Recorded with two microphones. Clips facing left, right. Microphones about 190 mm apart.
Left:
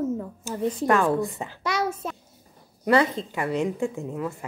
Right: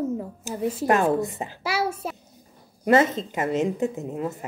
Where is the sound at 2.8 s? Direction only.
20° right (ahead or behind).